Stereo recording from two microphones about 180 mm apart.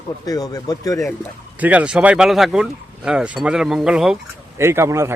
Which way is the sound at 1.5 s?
10° right (ahead or behind).